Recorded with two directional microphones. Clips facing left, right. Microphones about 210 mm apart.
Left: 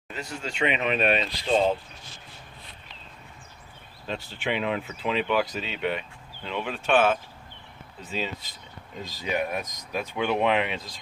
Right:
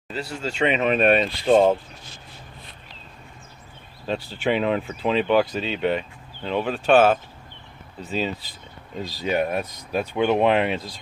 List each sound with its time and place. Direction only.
0.1 s speech: 40° right (ahead or behind)
4.1 s speech: 40° right (ahead or behind)